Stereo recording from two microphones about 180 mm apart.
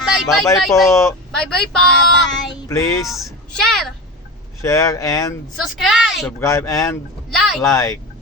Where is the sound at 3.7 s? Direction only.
Centre (ahead or behind).